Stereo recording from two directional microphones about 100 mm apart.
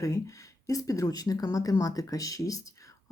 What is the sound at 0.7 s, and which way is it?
Speech, 35° left (ahead or behind).